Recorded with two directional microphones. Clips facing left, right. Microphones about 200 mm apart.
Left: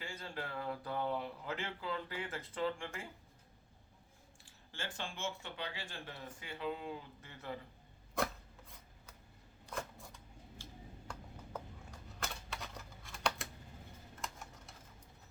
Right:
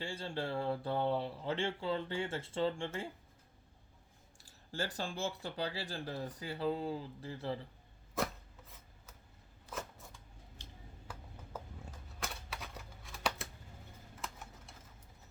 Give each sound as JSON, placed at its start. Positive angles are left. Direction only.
{"t": 0.0, "sound": "speech", "side_deg": -30}
{"t": 4.4, "sound": "speech", "side_deg": -40}
{"t": 8.1, "sound": "chopping", "side_deg": 0}
{"t": 9.6, "sound": "shuffling cards", "side_deg": 0}
{"t": 10.6, "sound": "a sound", "side_deg": -20}
{"t": 11.1, "sound": "typewriter", "side_deg": -5}